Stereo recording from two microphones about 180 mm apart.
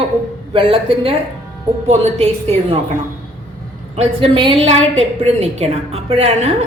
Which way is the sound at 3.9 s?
35° right (ahead or behind).